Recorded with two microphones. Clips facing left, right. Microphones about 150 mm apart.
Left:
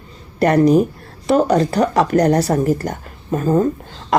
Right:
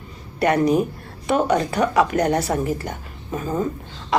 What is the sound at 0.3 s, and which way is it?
Speech, 35° left (ahead or behind).